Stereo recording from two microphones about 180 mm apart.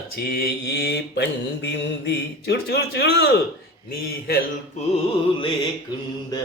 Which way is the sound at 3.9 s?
60° left (ahead or behind).